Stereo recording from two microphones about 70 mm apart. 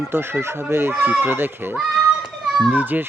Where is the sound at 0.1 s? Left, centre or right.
Right.